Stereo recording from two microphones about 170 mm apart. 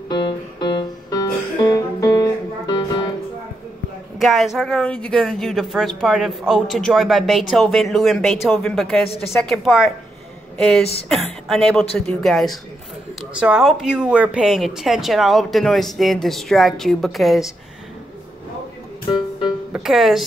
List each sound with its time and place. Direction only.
0.1 s music: 25° left (ahead or behind)
4.2 s speech: centre (ahead or behind)
11.1 s speech: centre (ahead or behind)
19.7 s speech: centre (ahead or behind)